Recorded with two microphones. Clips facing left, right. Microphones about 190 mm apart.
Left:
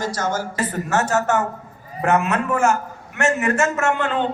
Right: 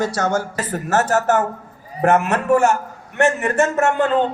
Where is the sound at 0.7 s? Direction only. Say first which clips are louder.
Right 4 dB; 45° right (ahead or behind).